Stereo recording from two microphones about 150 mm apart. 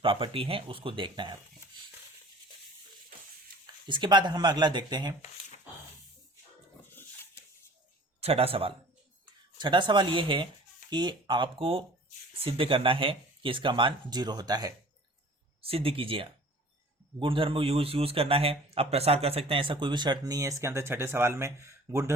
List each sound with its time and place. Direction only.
0.0 s a man's voice: 35° right (ahead or behind)
3.8 s speech: 30° right (ahead or behind)
8.2 s a man's voice: 40° right (ahead or behind)
15.6 s a man's voice: 40° right (ahead or behind); by 22.1 s 20° right (ahead or behind)